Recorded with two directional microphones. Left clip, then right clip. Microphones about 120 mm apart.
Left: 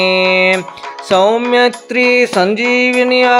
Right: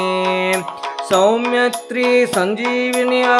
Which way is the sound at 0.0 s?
50° left (ahead or behind).